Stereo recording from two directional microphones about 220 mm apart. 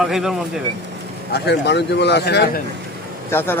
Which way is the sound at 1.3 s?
50° left (ahead or behind).